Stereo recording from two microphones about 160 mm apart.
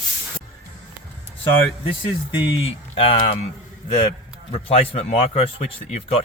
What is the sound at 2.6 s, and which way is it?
Speech, 35° left (ahead or behind).